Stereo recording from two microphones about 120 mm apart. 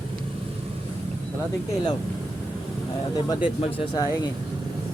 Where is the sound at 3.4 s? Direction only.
45° left (ahead or behind).